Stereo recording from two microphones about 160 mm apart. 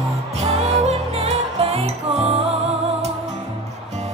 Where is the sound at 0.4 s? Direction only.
40° right (ahead or behind).